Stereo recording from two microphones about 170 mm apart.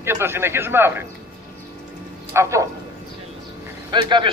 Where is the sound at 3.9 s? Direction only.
30° right (ahead or behind).